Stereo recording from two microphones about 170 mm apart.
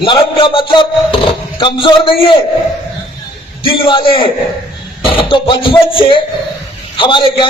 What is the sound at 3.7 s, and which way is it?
Speech, 30° left (ahead or behind).